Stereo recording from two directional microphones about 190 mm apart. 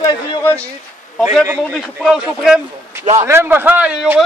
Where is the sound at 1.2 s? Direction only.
10° right (ahead or behind).